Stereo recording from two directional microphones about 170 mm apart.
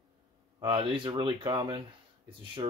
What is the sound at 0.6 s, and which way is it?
Speech, 30° right (ahead or behind).